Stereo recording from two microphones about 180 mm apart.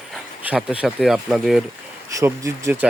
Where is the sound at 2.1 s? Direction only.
15° right (ahead or behind).